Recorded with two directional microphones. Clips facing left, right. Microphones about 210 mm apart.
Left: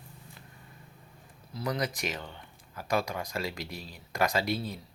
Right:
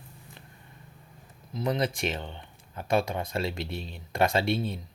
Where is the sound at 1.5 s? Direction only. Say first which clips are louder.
Right 4 dB; 25° right (ahead or behind).